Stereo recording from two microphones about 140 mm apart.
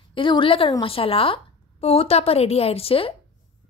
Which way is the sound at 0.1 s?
35° left (ahead or behind).